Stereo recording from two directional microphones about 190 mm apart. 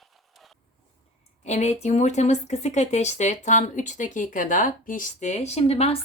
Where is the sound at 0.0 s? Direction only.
Centre (ahead or behind).